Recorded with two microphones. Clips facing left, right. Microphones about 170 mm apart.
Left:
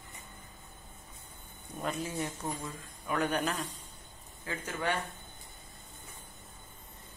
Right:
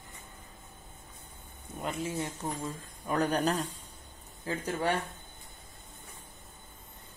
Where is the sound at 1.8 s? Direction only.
25° right (ahead or behind).